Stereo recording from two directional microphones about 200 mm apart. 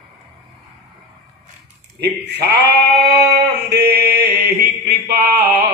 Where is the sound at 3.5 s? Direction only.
55° right (ahead or behind).